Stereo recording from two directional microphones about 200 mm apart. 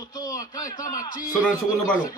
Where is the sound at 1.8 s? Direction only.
40° left (ahead or behind).